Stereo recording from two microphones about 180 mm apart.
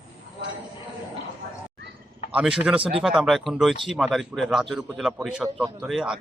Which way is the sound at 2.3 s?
5° right (ahead or behind).